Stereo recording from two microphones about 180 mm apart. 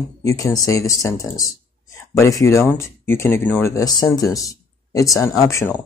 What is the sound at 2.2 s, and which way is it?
Speech, 15° left (ahead or behind).